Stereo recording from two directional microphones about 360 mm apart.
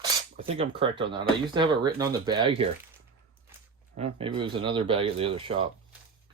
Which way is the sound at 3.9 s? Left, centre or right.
Centre.